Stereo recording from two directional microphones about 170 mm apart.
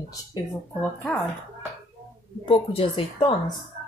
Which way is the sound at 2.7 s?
35° left (ahead or behind).